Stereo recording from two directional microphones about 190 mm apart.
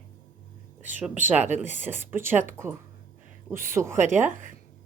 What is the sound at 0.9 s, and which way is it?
Speech, 10° right (ahead or behind).